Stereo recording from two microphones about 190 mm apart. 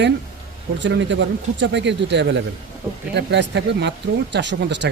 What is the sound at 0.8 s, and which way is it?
Speech, 70° right (ahead or behind).